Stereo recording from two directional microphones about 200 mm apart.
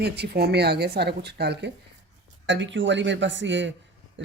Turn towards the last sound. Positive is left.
turn(degrees=-65)  # may be behind; listen again after turning